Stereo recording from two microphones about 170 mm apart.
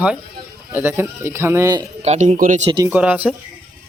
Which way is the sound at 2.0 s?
45° right (ahead or behind).